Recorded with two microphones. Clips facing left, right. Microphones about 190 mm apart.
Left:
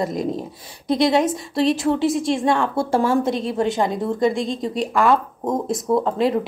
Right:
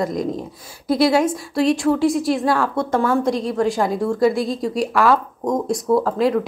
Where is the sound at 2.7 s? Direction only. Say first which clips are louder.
Even; 30° left (ahead or behind).